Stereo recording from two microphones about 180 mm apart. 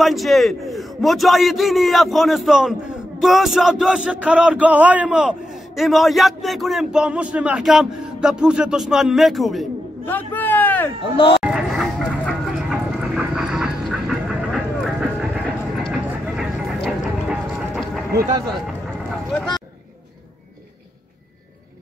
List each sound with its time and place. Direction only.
0.0 s a man's voice: centre (ahead or behind)
11.1 s speech: 30° left (ahead or behind)
11.4 s vehicle: centre (ahead or behind)